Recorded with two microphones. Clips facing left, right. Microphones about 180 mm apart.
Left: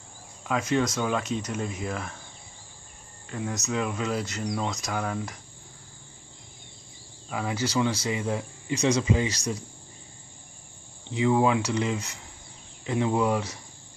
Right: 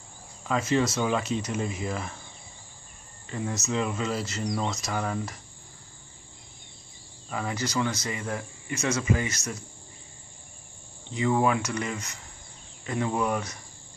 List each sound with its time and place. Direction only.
0.4 s speech: centre (ahead or behind)
3.3 s speech: centre (ahead or behind)
7.2 s speech: 5° left (ahead or behind)
11.1 s speech: 15° left (ahead or behind)